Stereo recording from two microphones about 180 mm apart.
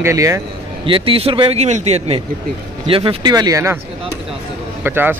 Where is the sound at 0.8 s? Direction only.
30° right (ahead or behind).